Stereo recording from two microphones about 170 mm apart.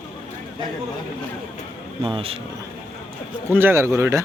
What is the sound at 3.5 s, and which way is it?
Speech, 15° right (ahead or behind).